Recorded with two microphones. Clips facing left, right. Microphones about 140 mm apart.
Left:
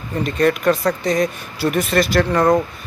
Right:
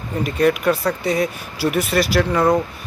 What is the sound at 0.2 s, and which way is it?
Speech, 10° right (ahead or behind).